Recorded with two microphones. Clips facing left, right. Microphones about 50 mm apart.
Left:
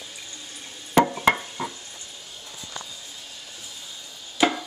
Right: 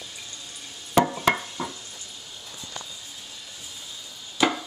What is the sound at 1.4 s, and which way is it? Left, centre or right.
Stir, left.